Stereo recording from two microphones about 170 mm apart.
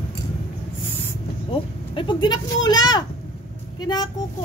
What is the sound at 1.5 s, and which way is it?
Speech, 30° left (ahead or behind).